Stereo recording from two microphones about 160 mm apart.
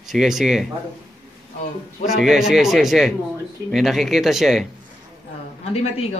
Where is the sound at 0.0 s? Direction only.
Centre (ahead or behind).